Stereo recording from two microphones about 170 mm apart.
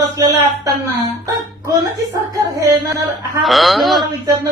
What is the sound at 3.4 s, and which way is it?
Speech, centre (ahead or behind).